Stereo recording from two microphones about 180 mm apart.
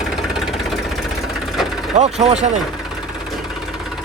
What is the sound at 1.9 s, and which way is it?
Speech, 40° right (ahead or behind).